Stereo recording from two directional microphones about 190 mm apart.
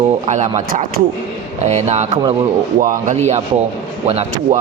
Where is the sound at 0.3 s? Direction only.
40° right (ahead or behind).